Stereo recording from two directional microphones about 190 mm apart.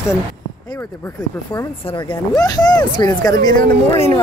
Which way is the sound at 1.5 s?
25° left (ahead or behind).